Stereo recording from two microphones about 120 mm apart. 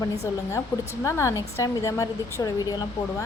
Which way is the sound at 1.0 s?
25° left (ahead or behind).